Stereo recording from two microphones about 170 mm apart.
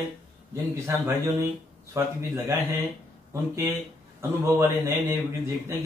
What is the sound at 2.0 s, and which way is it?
Speech, 15° right (ahead or behind).